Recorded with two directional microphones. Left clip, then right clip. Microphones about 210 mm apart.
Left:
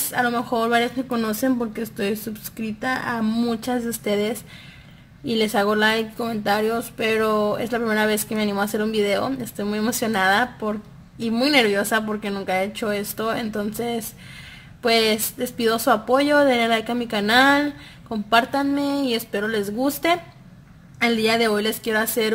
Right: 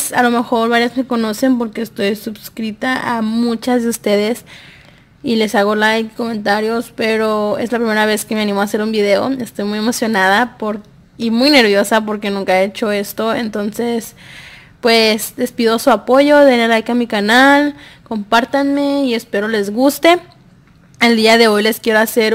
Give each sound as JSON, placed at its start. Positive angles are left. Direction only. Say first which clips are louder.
{"t": 0.1, "sound": "a woman's voice", "louder": "right 8 dB", "side_deg": -40}